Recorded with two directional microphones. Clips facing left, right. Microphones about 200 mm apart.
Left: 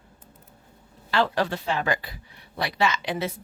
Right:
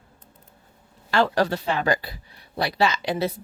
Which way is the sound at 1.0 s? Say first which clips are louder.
Right 3 dB; 45° right (ahead or behind).